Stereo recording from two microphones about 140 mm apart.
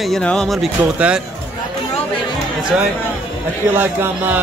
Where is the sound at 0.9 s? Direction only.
10° right (ahead or behind).